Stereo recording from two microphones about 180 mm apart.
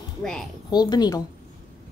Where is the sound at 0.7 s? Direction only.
20° left (ahead or behind).